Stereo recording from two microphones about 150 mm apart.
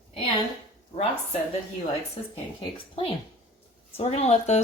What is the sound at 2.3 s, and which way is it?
A woman's voice, 35° left (ahead or behind).